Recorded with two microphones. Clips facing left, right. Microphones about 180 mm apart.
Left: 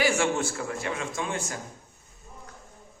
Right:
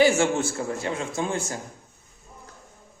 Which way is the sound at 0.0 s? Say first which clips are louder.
Right 5 dB; 25° right (ahead or behind).